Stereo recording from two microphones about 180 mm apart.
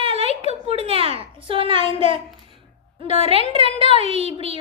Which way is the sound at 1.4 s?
30° right (ahead or behind).